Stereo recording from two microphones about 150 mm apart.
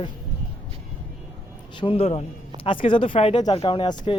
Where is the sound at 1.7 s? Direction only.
35° left (ahead or behind).